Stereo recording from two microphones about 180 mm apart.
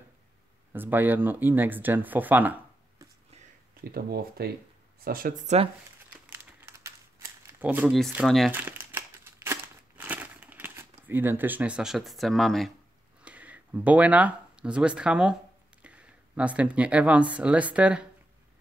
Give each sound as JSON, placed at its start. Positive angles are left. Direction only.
{"t": 0.7, "sound": "speech", "side_deg": -10}
{"t": 3.8, "sound": "speech", "side_deg": -55}
{"t": 6.0, "sound": "crumpling", "side_deg": -15}
{"t": 8.1, "sound": "speech", "side_deg": 0}
{"t": 8.5, "sound": "crumpling", "side_deg": -10}
{"t": 13.2, "sound": "speech", "side_deg": -10}